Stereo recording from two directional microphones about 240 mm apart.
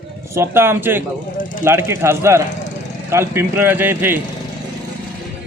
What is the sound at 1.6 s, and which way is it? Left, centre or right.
Speech, centre.